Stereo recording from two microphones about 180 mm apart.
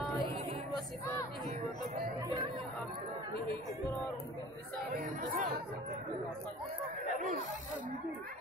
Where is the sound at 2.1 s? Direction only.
25° right (ahead or behind).